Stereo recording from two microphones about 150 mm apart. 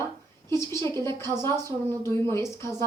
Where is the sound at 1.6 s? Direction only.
15° left (ahead or behind).